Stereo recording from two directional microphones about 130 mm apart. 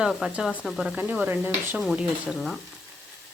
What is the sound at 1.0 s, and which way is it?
Speech, 15° right (ahead or behind).